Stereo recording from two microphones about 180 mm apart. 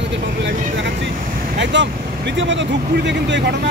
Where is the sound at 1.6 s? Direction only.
90° right.